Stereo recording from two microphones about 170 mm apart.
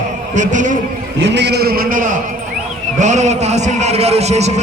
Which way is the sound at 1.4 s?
75° right (ahead or behind).